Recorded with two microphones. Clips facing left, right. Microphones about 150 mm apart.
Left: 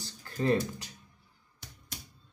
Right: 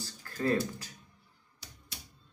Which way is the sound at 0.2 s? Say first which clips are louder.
Left 2 dB; 20° left (ahead or behind).